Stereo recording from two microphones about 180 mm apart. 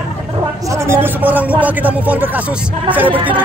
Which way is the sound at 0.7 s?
15° right (ahead or behind).